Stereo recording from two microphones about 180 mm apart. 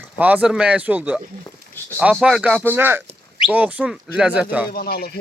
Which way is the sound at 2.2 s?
5° right (ahead or behind).